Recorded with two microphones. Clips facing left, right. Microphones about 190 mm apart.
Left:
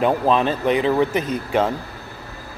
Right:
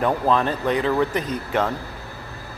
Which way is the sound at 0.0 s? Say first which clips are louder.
Left 2 dB; 20° left (ahead or behind).